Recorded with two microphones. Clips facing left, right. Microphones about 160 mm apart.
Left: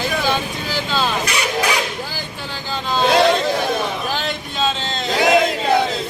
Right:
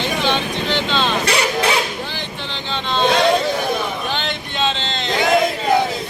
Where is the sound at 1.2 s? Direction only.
30° right (ahead or behind).